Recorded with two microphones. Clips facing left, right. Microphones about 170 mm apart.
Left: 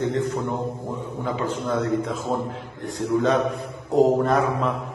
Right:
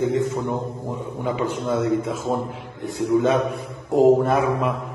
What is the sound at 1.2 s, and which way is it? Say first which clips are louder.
A man's voice: right 2 dB; 10° right (ahead or behind).